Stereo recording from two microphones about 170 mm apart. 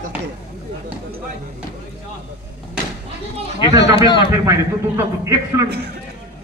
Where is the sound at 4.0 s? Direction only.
30° left (ahead or behind).